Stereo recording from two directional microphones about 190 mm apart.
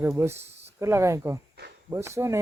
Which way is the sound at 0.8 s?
15° right (ahead or behind).